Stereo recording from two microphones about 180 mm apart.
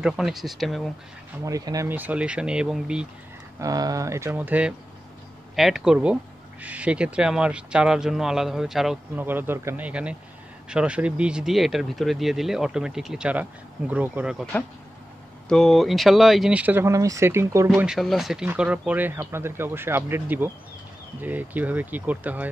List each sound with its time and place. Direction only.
0.0 s speech: centre (ahead or behind)
1.4 s speech: 20° right (ahead or behind)
3.5 s speech: 20° right (ahead or behind)
14.5 s speech: 10° left (ahead or behind); by 17.6 s 15° right (ahead or behind)
17.7 s speech: 5° right (ahead or behind)